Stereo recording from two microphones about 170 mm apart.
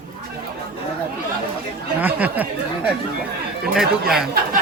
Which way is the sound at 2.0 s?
10° right (ahead or behind).